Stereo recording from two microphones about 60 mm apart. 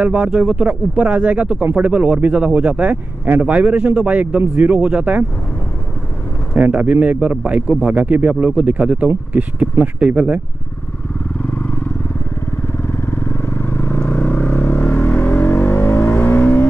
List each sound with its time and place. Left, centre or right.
0.0 s speech: right
6.6 s speech: right
11.5 s vehicle: left
12.7 s vehicle: left